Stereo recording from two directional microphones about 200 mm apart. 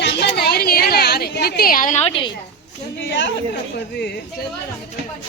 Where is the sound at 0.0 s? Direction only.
55° left (ahead or behind); by 2.3 s 30° left (ahead or behind).